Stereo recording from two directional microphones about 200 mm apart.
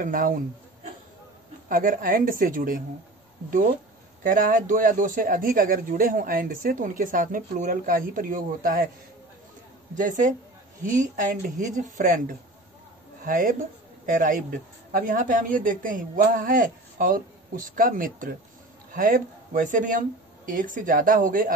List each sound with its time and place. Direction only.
0.0 s a man's voice: 45° right (ahead or behind)
1.7 s a man's voice: 40° right (ahead or behind)
4.2 s a man's voice: 45° right (ahead or behind)
9.9 s speech: 40° right (ahead or behind)